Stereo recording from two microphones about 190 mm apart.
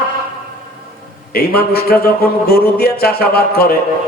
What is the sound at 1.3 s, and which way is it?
A man's voice, 55° left (ahead or behind).